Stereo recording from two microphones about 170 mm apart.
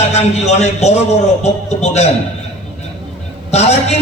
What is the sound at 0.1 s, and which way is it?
A man's voice, 40° left (ahead or behind).